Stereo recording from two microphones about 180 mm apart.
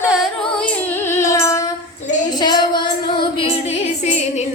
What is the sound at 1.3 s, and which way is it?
Female singing, 20° left (ahead or behind).